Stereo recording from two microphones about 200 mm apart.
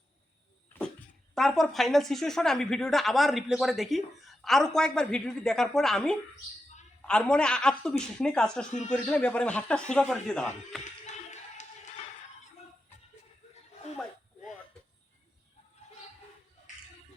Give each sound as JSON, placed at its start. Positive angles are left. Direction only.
{"t": 0.7, "sound": "a sound", "side_deg": 10}
{"t": 1.4, "sound": "a woman's voice", "side_deg": 0}
{"t": 11.0, "sound": "music", "side_deg": 35}